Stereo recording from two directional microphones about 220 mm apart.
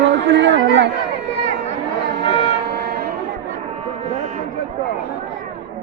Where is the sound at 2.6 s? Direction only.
45° right (ahead or behind).